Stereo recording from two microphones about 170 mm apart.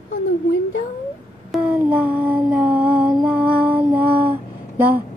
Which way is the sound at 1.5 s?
5° right (ahead or behind).